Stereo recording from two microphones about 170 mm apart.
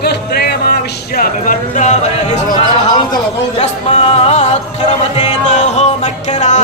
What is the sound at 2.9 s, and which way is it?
Speech, 25° left (ahead or behind).